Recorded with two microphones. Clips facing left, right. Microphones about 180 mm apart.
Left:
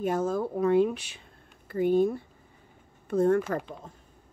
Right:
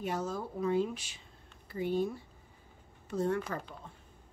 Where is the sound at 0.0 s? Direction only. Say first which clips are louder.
Left 8 dB; 50° left (ahead or behind).